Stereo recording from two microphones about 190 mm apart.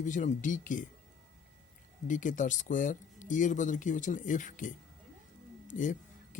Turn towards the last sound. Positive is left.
turn(degrees=45)  # may be behind; listen again after turning